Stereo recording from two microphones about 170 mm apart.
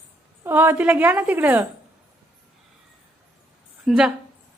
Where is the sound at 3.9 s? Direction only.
Centre (ahead or behind).